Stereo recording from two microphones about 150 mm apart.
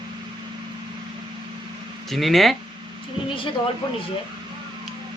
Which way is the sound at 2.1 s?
Centre (ahead or behind).